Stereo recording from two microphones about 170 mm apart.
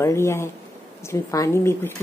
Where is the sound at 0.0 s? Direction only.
15° left (ahead or behind).